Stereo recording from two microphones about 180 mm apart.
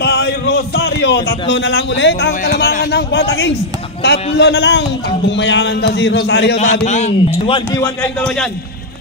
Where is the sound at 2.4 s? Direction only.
60° left (ahead or behind).